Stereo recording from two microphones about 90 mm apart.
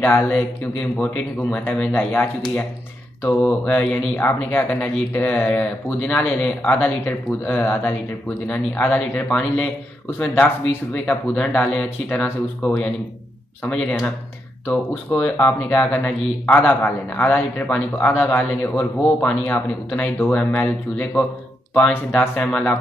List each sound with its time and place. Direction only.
0.0 s a man's voice: 20° left (ahead or behind)
3.7 s a man's voice: 20° left (ahead or behind)
9.3 s speech: 10° left (ahead or behind)
10.4 s a man's voice: 20° left (ahead or behind)
22.4 s speech: 15° left (ahead or behind)